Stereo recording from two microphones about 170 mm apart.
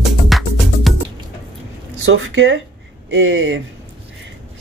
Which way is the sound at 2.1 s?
90° right.